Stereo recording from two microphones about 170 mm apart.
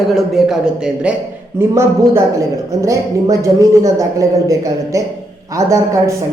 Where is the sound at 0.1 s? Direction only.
Centre (ahead or behind).